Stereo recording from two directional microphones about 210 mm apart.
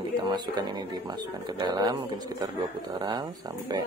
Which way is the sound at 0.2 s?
20° right (ahead or behind).